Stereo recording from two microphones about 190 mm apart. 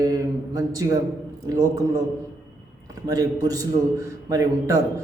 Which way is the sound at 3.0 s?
20° right (ahead or behind).